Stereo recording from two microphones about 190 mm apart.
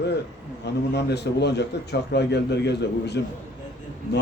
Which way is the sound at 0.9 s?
60° left (ahead or behind).